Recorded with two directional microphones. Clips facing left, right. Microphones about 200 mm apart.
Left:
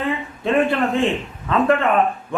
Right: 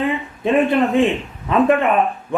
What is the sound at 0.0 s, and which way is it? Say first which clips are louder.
A man's voice: right 3 dB; 20° right (ahead or behind).